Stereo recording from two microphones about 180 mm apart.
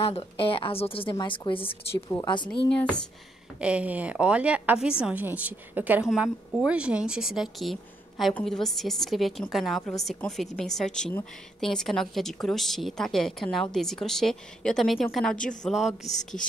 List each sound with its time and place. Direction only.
0.0 s a woman's voice: 30° left (ahead or behind)
2.0 s a woman's voice: 15° left (ahead or behind)
3.6 s a woman's voice: 5° right (ahead or behind)